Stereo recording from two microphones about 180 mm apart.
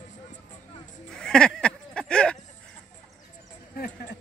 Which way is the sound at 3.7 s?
55° left (ahead or behind).